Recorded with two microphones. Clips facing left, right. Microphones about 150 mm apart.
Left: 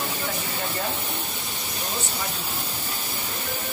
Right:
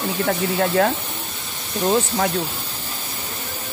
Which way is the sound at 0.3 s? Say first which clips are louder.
Right 11 dB; 75° right (ahead or behind).